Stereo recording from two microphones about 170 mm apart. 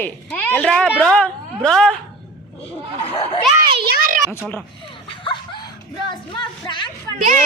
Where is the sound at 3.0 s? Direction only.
35° left (ahead or behind).